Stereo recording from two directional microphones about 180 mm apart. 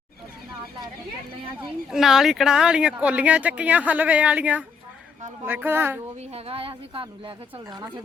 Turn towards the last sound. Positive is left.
turn(degrees=-25)  # may be behind; listen again after turning